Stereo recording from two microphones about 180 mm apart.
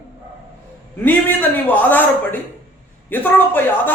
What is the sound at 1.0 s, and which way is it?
Speech, 10° left (ahead or behind).